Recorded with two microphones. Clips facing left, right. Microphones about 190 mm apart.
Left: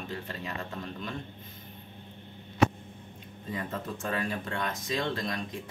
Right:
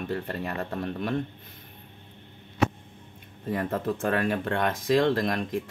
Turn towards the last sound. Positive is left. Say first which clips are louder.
# right 9 dB
turn(degrees=-60)  # may be behind; listen again after turning